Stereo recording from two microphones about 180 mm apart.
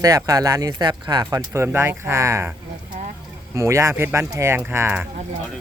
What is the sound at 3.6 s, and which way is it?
Speech, 15° right (ahead or behind).